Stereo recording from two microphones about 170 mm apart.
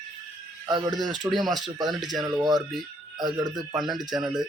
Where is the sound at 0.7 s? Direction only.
25° right (ahead or behind).